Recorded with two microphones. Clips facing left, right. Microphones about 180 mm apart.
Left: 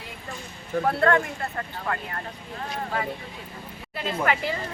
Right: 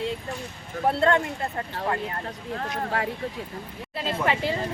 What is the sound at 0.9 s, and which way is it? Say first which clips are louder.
Speech: right 1 dB; 25° right (ahead or behind).